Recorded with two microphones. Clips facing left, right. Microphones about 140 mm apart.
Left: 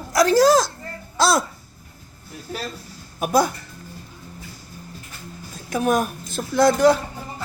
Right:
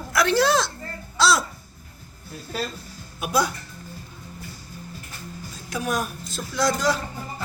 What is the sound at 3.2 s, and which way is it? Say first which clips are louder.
Speech: left 4 dB; 50° left (ahead or behind).